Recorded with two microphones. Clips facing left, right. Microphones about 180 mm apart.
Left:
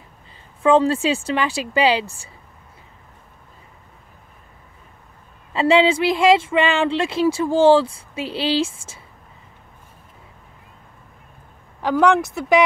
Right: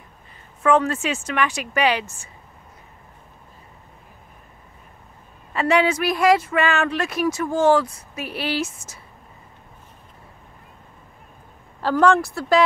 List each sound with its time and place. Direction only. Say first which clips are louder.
0.6 s speech: left 3 dB; 30° left (ahead or behind)
5.5 s speech: left 3 dB; 25° left (ahead or behind)
11.8 s speech: left 1 dB; 15° left (ahead or behind)